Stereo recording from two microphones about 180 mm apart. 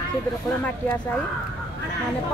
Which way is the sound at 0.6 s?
5° left (ahead or behind).